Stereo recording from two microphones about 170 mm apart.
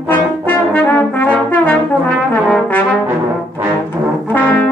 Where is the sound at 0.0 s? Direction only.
10° left (ahead or behind).